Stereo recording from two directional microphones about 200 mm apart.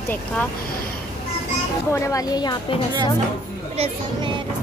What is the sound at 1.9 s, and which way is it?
Speech, 15° left (ahead or behind).